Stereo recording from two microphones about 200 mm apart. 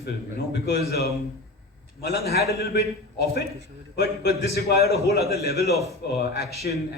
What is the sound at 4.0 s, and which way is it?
A man's voice, 55° left (ahead or behind).